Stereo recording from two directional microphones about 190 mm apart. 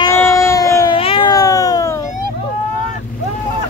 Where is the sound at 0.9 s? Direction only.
25° left (ahead or behind).